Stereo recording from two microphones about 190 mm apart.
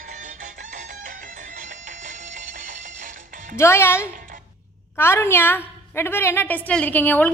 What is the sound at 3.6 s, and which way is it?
A woman's voice, 15° left (ahead or behind).